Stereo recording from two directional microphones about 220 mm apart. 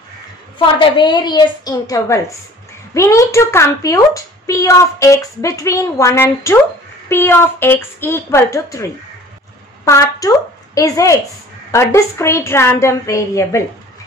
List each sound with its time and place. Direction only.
0.7 s a child's voice: 20° left (ahead or behind)
9.8 s a woman's voice: 15° left (ahead or behind)